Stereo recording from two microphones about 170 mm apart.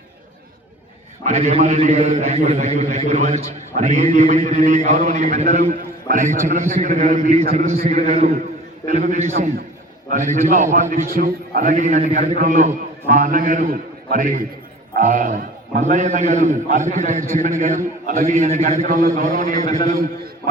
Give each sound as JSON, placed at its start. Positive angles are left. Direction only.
{"t": 1.2, "sound": "a man's voice", "side_deg": -45}
{"t": 10.3, "sound": "a man's voice", "side_deg": -50}
{"t": 18.2, "sound": "a man's voice", "side_deg": -40}
{"t": 18.9, "sound": "a man's voice", "side_deg": -60}